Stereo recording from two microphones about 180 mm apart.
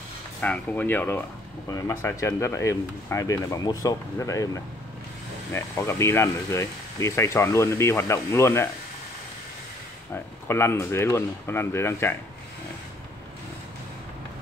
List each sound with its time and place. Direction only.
0.4 s speech: 10° left (ahead or behind)
5.5 s speech: 15° left (ahead or behind)
10.1 s speech: 15° left (ahead or behind)